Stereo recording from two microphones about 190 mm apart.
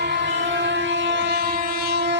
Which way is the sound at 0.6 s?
70° right (ahead or behind).